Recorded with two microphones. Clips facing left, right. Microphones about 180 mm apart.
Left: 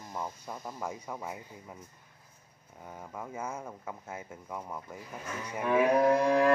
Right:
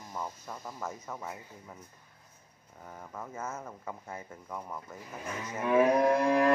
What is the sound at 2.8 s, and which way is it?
Speech, 10° left (ahead or behind).